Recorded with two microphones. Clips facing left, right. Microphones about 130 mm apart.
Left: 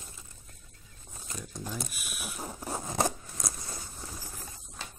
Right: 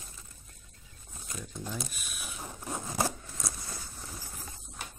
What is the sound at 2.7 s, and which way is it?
Scissors, 20° left (ahead or behind).